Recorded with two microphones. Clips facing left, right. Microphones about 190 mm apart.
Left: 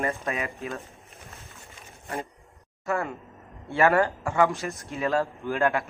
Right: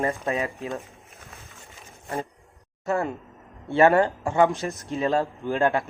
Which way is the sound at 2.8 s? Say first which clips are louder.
Right 3 dB; 25° right (ahead or behind).